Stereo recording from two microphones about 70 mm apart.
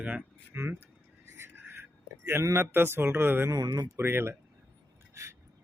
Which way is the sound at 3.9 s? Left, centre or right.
Right.